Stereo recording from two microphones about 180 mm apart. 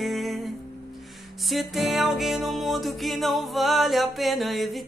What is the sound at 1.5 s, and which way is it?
Music, centre (ahead or behind).